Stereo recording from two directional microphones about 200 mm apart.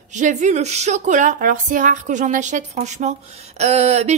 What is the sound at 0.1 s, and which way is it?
Speech, 35° right (ahead or behind).